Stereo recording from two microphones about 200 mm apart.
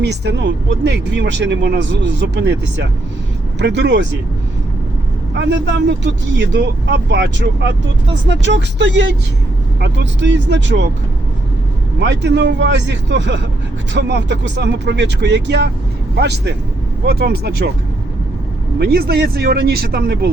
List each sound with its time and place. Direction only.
0.0 s speech: 60° right (ahead or behind)
5.3 s speech: 60° right (ahead or behind)
11.9 s speech: 60° right (ahead or behind)
18.8 s speech: 50° right (ahead or behind)